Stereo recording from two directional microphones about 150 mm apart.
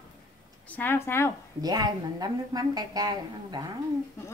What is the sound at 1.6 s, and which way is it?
A woman's voice, 25° right (ahead or behind).